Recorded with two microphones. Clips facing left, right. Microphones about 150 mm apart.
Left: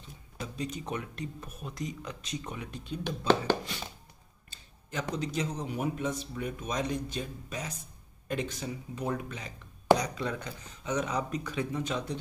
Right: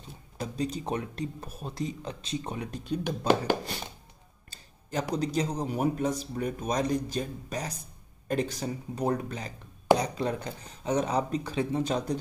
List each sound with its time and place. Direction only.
0.4 s speech: 35° right (ahead or behind)
5.1 s speech: 35° right (ahead or behind)